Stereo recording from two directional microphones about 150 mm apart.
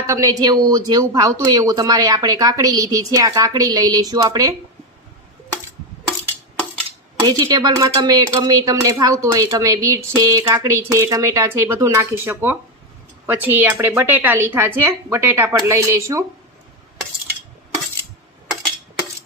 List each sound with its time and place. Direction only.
0.0 s speech: 20° right (ahead or behind)
7.2 s a woman's voice: 25° right (ahead or behind)